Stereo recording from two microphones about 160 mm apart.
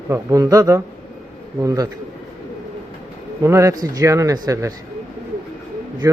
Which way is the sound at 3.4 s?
20° right (ahead or behind).